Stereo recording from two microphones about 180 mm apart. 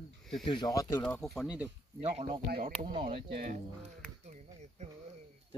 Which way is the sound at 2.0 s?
35° right (ahead or behind).